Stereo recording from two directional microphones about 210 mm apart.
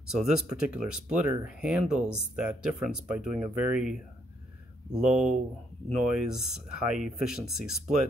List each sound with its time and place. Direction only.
0.1 s speech: 5° right (ahead or behind)
4.9 s speech: 5° right (ahead or behind)